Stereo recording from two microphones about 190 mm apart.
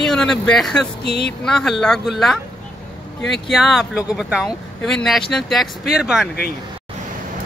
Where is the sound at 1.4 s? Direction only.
Centre (ahead or behind).